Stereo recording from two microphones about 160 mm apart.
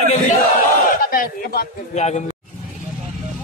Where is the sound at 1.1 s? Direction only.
65° left (ahead or behind).